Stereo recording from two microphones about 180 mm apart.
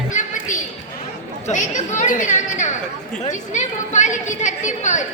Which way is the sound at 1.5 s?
40° left (ahead or behind).